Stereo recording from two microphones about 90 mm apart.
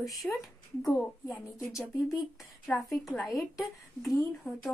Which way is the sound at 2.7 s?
20° left (ahead or behind).